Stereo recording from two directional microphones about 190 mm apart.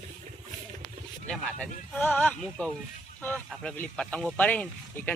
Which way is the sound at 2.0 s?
10° left (ahead or behind).